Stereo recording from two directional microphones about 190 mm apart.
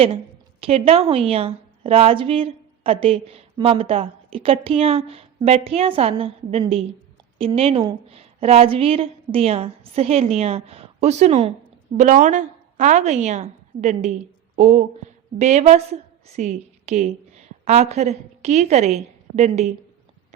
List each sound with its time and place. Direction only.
0.6 s a woman's voice: 30° right (ahead or behind)